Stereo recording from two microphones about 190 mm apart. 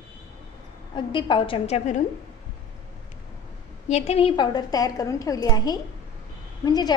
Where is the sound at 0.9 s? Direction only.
25° left (ahead or behind).